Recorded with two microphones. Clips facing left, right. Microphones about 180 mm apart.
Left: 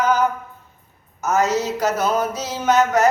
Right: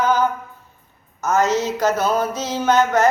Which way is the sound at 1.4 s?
20° right (ahead or behind).